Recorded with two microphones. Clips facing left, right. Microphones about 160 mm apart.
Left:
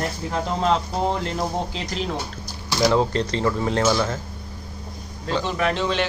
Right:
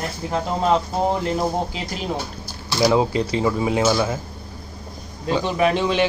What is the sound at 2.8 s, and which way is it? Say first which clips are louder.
Speech: right 2 dB; 10° right (ahead or behind).